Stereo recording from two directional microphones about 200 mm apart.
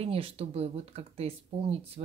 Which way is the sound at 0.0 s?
30° right (ahead or behind).